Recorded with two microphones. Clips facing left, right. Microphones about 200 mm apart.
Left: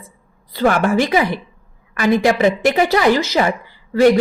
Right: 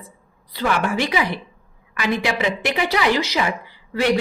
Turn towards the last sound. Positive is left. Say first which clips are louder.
# left 8 dB
turn(degrees=45)  # may be behind; listen again after turning